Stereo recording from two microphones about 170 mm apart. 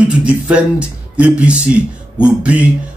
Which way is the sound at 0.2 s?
5° right (ahead or behind).